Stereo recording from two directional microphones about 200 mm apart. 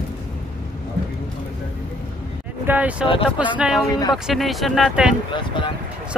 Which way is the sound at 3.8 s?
20° left (ahead or behind).